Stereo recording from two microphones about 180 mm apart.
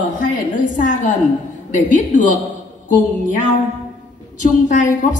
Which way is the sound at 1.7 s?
45° left (ahead or behind).